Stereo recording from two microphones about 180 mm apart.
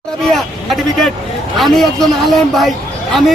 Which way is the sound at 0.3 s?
Centre (ahead or behind).